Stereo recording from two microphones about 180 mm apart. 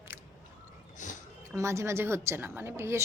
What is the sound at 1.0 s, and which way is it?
Speech, 45° left (ahead or behind).